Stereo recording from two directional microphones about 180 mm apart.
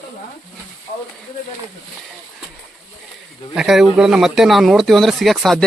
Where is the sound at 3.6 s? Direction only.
Centre (ahead or behind).